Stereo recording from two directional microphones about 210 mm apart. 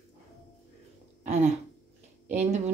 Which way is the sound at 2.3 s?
35° right (ahead or behind).